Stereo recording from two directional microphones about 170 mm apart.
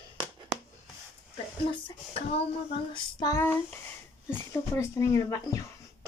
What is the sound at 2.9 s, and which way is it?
Speech, 25° left (ahead or behind).